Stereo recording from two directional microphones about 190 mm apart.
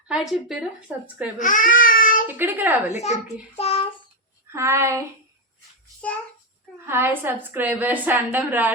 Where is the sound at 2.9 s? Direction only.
35° left (ahead or behind).